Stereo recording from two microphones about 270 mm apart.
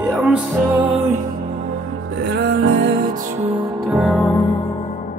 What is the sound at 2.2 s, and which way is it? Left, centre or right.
Music, right.